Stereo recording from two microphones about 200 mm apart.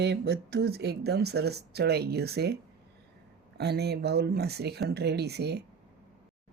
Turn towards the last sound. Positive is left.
turn(degrees=-55)  # may be behind; listen again after turning